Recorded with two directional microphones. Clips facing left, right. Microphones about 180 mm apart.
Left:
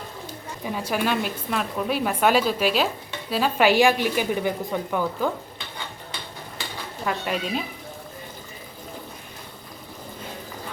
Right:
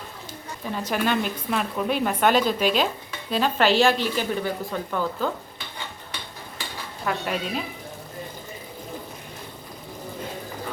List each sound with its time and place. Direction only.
0.6 s speech: 10° left (ahead or behind)
7.0 s speech: centre (ahead or behind)